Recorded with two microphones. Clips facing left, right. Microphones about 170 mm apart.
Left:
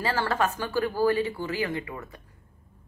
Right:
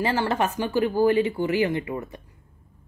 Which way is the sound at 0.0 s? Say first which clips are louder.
Right 3 dB; 20° right (ahead or behind).